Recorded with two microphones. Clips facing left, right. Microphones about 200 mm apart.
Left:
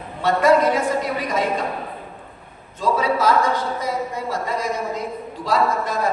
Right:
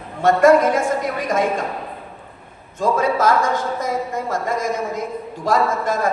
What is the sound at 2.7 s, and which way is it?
A woman's voice, 50° right (ahead or behind).